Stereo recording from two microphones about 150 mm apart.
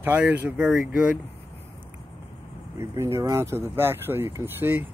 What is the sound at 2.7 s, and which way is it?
Speech, 20° right (ahead or behind).